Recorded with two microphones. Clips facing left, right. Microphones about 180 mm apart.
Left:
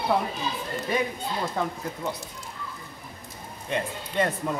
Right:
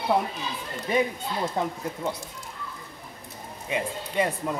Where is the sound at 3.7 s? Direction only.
10° right (ahead or behind).